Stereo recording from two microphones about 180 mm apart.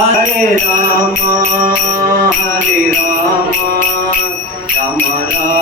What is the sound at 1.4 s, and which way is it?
Music, 50° right (ahead or behind).